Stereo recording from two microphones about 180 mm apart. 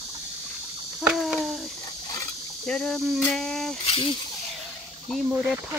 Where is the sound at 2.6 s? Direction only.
5° left (ahead or behind).